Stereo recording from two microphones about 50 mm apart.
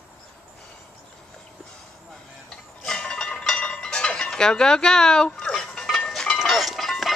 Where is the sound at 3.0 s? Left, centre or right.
Centre.